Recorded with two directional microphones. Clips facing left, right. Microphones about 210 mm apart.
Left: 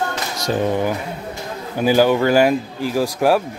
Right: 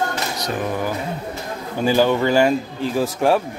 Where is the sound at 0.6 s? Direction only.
20° left (ahead or behind).